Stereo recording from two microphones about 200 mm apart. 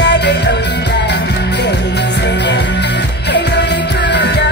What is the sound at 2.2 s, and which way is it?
Music, 60° left (ahead or behind).